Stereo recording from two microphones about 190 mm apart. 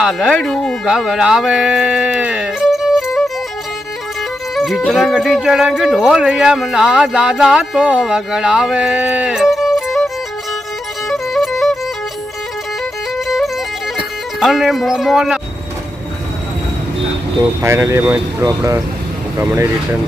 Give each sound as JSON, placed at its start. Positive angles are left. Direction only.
{"t": 0.0, "sound": "speech", "side_deg": 0}
{"t": 4.5, "sound": "speech", "side_deg": 0}
{"t": 11.1, "sound": "music", "side_deg": 0}
{"t": 13.1, "sound": "music", "side_deg": 0}
{"t": 13.9, "sound": "speech", "side_deg": 0}
{"t": 17.6, "sound": "speech", "side_deg": -15}